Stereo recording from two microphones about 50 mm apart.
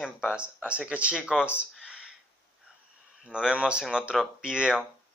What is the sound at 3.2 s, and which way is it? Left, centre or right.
Speech, centre.